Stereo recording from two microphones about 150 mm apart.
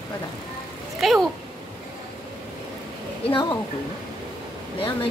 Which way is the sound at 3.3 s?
30° left (ahead or behind).